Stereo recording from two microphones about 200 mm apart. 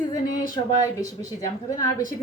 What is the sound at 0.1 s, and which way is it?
Speech, 20° left (ahead or behind).